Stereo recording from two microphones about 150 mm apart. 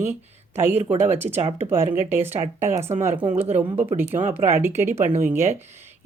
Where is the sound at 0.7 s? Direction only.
45° right (ahead or behind).